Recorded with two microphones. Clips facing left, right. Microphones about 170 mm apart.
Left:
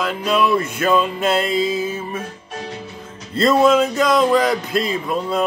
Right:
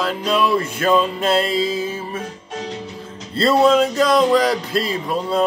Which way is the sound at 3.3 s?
30° right (ahead or behind).